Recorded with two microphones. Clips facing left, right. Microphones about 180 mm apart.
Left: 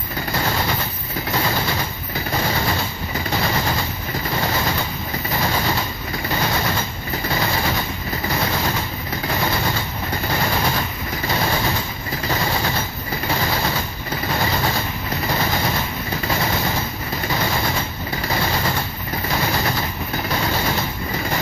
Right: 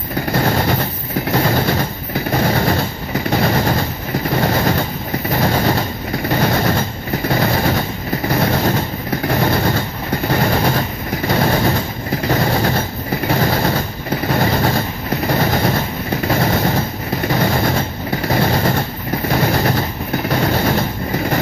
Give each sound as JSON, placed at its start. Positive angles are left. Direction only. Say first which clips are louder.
{"t": 0.3, "sound": "train", "louder": "right 6 dB", "side_deg": -50}
{"t": 9.3, "sound": "machine gun", "louder": "right 6 dB", "side_deg": -50}
{"t": 10.3, "sound": "train", "louder": "right 6 dB", "side_deg": -50}
{"t": 17.3, "sound": "vehicle", "louder": "right 6 dB", "side_deg": -50}
{"t": 20.2, "sound": "train", "louder": "right 6 dB", "side_deg": -50}